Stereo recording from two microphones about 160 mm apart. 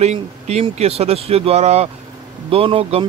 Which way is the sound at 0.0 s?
45° right (ahead or behind).